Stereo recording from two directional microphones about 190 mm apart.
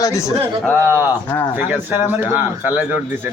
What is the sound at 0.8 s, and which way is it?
A man's voice, 10° right (ahead or behind).